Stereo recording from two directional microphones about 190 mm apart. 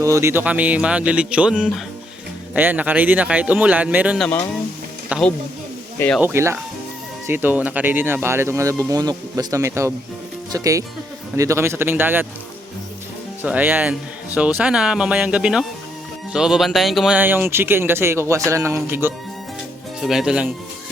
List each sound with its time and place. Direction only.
0.0 s speech: 15° right (ahead or behind)
5.0 s music: 5° right (ahead or behind)
6.1 s speech: 10° right (ahead or behind)
13.4 s speech: 10° right (ahead or behind)
20.0 s speech: centre (ahead or behind)